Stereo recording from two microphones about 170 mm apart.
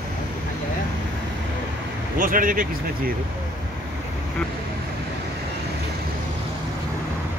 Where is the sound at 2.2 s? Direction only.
55° right (ahead or behind).